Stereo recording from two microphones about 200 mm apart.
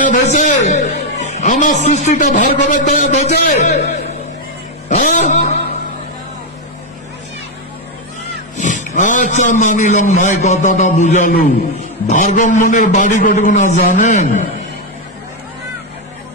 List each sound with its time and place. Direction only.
0.0 s a man's voice: 40° left (ahead or behind)
4.8 s a sound: 35° left (ahead or behind)
8.5 s a man's voice: 40° left (ahead or behind)